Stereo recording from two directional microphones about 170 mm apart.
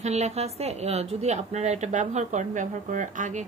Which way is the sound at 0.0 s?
40° right (ahead or behind).